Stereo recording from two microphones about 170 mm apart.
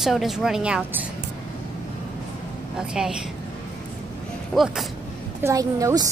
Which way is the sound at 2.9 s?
5° right (ahead or behind).